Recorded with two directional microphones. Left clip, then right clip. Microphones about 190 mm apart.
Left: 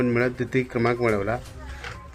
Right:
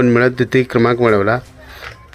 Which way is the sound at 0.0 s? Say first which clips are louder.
Right 10 dB; 35° right (ahead or behind).